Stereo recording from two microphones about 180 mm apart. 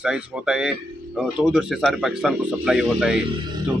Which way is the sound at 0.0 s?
5° right (ahead or behind).